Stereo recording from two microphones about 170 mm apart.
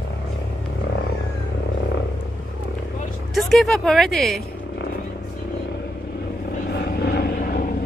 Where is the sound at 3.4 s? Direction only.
Centre (ahead or behind).